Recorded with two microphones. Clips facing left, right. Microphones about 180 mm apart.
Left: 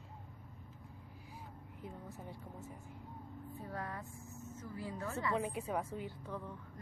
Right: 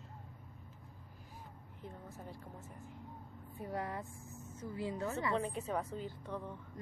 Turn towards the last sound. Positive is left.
turn(degrees=5)  # may be behind; listen again after turning